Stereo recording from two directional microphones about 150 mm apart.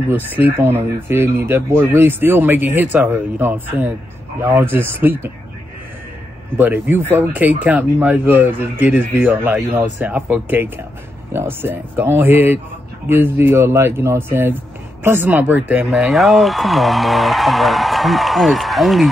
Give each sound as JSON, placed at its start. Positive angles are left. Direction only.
{"t": 0.1, "sound": "speech", "side_deg": -15}
{"t": 6.6, "sound": "speech", "side_deg": -15}
{"t": 15.9, "sound": "speech", "side_deg": 0}